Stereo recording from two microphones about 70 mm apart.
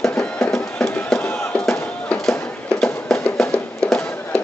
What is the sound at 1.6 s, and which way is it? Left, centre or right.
Music, centre.